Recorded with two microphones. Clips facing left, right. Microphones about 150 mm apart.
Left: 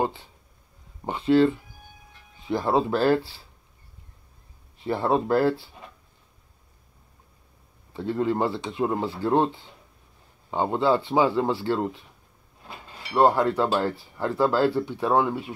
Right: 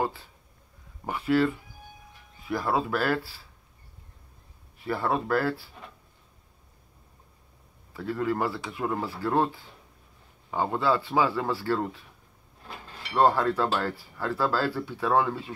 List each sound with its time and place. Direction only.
0.0 s speech: 20° left (ahead or behind)
4.7 s speech: 25° left (ahead or behind)
7.9 s speech: 25° left (ahead or behind)